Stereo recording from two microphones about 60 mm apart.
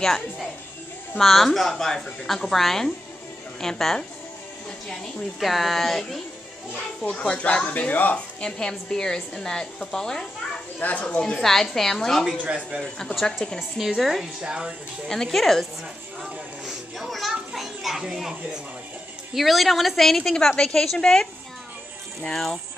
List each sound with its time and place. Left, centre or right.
1.1 s a woman's voice: centre
5.4 s a woman's voice: centre
7.3 s a woman's voice: left
8.5 s a woman's voice: centre
10.8 s a woman's voice: left
11.4 s a woman's voice: centre
12.4 s a man's voice: centre
13.1 s a woman's voice: centre
13.6 s a woman's voice: centre
14.4 s speech: centre
15.0 s a woman's voice: centre
16.2 s a sound: centre
17.3 s children playing: centre
19.3 s a woman's voice: centre